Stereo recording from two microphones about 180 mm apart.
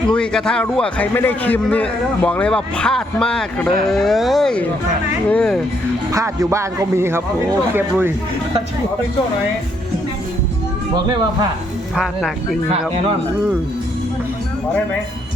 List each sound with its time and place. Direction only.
0.1 s a man's voice: 5° left (ahead or behind)
6.1 s speech: 15° right (ahead or behind)
11.9 s a man's voice: centre (ahead or behind)